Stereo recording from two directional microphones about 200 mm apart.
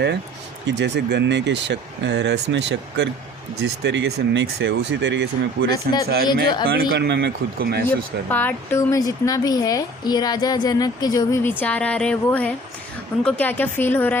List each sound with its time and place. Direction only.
0.8 s speech: 60° right (ahead or behind)
6.2 s speech: 20° left (ahead or behind)
6.9 s speech: 55° right (ahead or behind)
7.9 s speech: 10° left (ahead or behind)